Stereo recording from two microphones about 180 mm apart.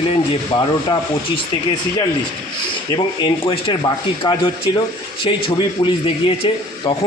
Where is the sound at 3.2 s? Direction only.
25° left (ahead or behind).